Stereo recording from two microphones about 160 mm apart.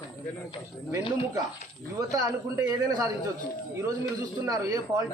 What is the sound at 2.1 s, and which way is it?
A man's voice, 20° right (ahead or behind).